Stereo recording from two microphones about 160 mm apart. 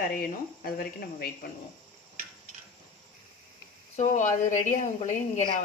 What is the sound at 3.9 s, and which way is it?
Speech, 50° left (ahead or behind).